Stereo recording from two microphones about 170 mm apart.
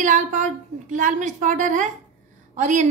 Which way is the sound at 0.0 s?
45° right (ahead or behind).